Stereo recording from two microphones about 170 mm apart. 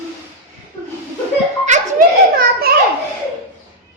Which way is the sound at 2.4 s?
65° right (ahead or behind).